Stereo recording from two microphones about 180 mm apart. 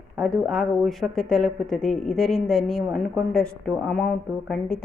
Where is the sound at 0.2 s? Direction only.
Centre (ahead or behind).